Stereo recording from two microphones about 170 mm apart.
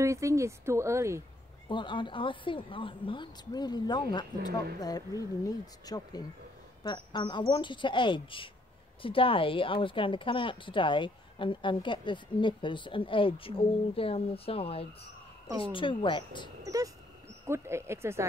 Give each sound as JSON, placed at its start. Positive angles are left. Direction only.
{"t": 0.0, "sound": "speech", "side_deg": -15}
{"t": 1.7, "sound": "a woman's voice", "side_deg": 30}
{"t": 16.6, "sound": "speech", "side_deg": -20}